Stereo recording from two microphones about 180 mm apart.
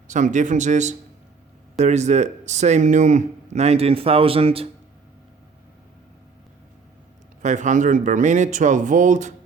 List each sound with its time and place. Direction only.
0.1 s speech: 45° right (ahead or behind)
7.4 s speech: 45° right (ahead or behind)